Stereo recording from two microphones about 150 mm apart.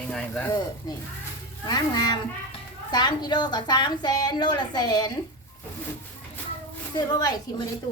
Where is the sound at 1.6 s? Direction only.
25° left (ahead or behind).